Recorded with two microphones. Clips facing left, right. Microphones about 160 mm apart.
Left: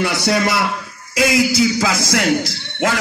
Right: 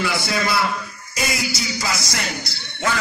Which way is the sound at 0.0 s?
75° left (ahead or behind).